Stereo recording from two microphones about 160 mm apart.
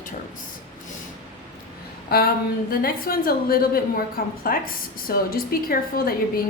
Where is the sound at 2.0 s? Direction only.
70° left (ahead or behind).